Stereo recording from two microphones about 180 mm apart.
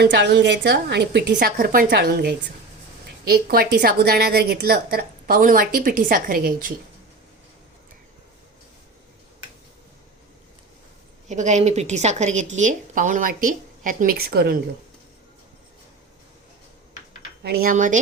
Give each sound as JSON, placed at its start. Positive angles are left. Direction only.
{"t": 0.0, "sound": "a woman's voice", "side_deg": -75}
{"t": 11.3, "sound": "a woman's voice", "side_deg": -40}
{"t": 17.4, "sound": "a woman's voice", "side_deg": -60}